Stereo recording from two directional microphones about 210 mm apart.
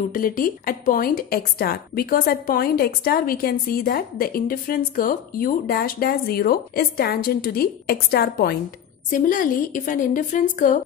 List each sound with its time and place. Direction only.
0.1 s a woman's voice: 40° left (ahead or behind)